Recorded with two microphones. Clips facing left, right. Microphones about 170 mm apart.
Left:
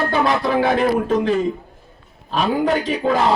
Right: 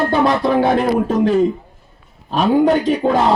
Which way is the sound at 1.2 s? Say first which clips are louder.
Right 5 dB; 40° right (ahead or behind).